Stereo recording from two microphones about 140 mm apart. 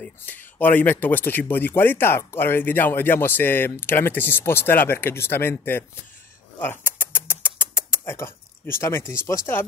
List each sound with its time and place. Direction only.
0.0 s speech: 15° left (ahead or behind)
6.6 s rodents: 15° left (ahead or behind)